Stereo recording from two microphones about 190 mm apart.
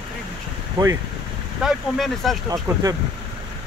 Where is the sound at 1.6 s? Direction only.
Centre (ahead or behind).